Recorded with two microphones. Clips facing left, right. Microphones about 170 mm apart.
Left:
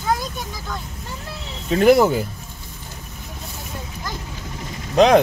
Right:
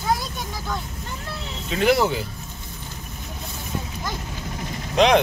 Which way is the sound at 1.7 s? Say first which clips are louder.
Left 6 dB; 45° left (ahead or behind).